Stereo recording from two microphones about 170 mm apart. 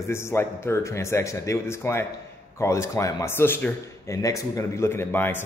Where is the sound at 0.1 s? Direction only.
15° left (ahead or behind).